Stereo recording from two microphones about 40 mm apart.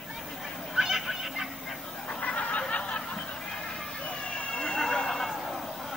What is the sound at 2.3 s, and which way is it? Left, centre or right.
Snicker, left.